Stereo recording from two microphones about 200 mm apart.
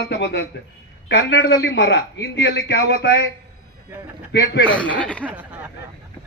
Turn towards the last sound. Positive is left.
turn(degrees=-5)  # may be behind; listen again after turning